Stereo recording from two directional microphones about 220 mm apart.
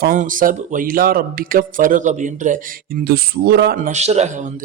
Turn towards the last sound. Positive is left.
turn(degrees=-30)  # may be behind; listen again after turning